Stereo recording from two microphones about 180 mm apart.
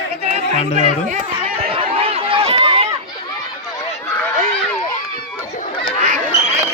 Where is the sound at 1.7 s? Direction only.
30° right (ahead or behind).